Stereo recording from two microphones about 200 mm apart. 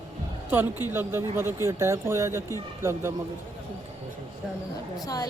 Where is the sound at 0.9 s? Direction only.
10° right (ahead or behind).